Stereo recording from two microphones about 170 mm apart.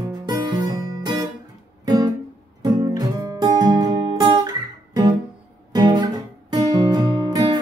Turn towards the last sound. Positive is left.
turn(degrees=-25)  # may be behind; listen again after turning